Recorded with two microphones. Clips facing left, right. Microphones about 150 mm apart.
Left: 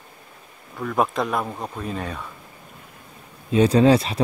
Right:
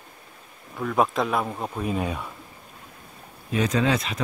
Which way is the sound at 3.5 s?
35° left (ahead or behind).